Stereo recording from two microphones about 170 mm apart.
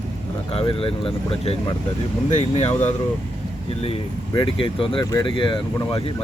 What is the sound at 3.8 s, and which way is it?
Speech, 30° left (ahead or behind).